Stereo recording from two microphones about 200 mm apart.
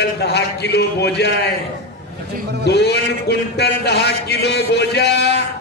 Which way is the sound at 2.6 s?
55° left (ahead or behind).